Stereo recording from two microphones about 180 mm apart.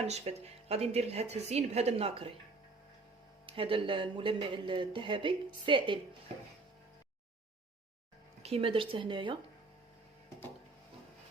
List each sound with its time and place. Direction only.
0.1 s a woman's voice: 35° right (ahead or behind)
3.4 s speech: 30° right (ahead or behind)
8.4 s speech: 35° right (ahead or behind)